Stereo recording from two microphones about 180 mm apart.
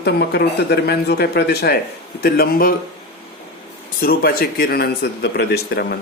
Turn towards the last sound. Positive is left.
turn(degrees=65)  # may be behind; listen again after turning